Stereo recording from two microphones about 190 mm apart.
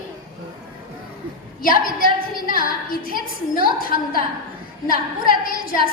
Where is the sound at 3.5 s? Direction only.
50° left (ahead or behind).